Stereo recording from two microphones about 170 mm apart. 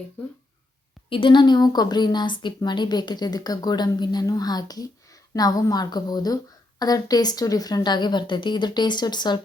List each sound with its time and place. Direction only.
1.1 s a woman's voice: 30° left (ahead or behind)